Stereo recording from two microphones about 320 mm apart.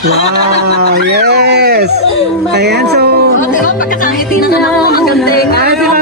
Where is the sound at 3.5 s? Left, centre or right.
Left.